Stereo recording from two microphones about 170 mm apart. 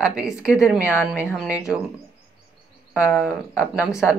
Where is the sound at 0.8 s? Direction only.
15° left (ahead or behind).